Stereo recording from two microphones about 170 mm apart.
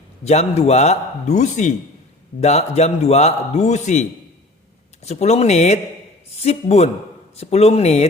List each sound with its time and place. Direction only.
0.3 s a man's voice: 40° left (ahead or behind)
5.0 s a man's voice: 40° left (ahead or behind)